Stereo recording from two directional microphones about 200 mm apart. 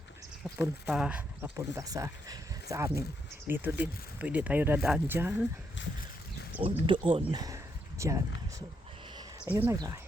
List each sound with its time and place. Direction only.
0.5 s speech: 15° right (ahead or behind)
6.6 s speech: 25° right (ahead or behind)
9.4 s speech: 10° right (ahead or behind)